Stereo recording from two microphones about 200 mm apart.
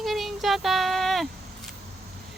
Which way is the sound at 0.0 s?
Centre (ahead or behind).